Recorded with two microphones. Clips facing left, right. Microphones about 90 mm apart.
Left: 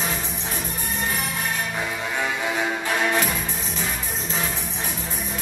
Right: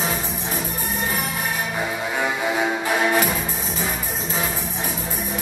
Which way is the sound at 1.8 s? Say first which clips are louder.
Right 3 dB; 10° right (ahead or behind).